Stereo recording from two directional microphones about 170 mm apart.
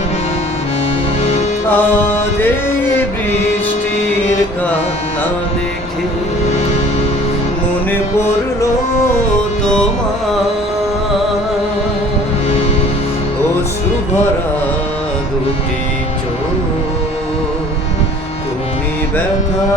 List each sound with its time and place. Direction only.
1.2 s music: 40° left (ahead or behind)
1.6 s music: 10° left (ahead or behind)